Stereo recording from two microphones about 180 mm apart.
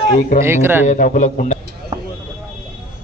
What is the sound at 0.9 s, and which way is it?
Speech, 45° left (ahead or behind).